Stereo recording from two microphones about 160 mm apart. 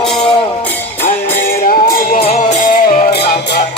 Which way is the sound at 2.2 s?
45° left (ahead or behind).